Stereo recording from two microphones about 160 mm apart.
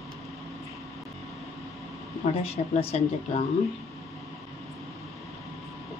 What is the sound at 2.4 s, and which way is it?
Speech, 35° left (ahead or behind).